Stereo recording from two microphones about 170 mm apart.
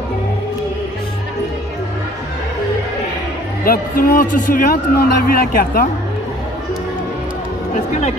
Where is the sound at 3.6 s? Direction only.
60° left (ahead or behind).